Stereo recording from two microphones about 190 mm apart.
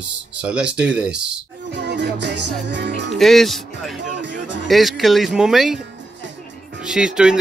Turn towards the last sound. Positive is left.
turn(degrees=-5)  # may be behind; listen again after turning